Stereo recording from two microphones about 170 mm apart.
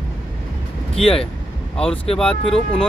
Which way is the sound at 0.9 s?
35° left (ahead or behind).